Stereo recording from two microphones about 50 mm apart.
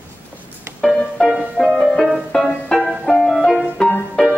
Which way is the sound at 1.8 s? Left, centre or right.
Left.